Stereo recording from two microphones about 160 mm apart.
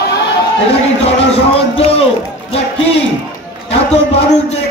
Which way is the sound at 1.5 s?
35° left (ahead or behind).